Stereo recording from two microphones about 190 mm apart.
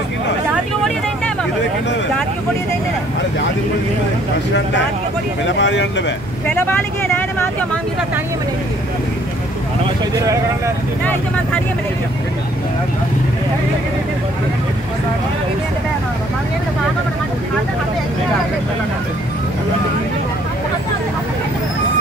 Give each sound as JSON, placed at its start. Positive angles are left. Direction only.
{"t": 5.4, "sound": "speech", "side_deg": 70}
{"t": 6.5, "sound": "speech", "side_deg": 10}